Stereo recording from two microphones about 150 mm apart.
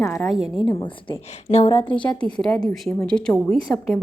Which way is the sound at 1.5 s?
40° left (ahead or behind).